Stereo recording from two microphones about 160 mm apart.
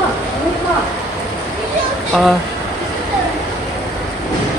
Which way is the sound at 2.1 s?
5° left (ahead or behind).